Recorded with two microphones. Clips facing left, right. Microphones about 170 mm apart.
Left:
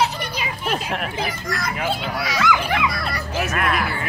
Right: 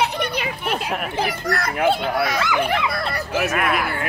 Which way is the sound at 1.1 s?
65° right (ahead or behind).